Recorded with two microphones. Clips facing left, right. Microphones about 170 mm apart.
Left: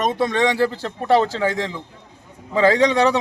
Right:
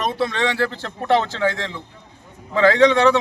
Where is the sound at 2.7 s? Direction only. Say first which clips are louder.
Right 3 dB; 40° left (ahead or behind).